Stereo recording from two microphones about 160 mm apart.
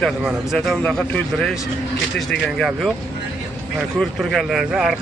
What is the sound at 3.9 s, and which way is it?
Speech, centre (ahead or behind).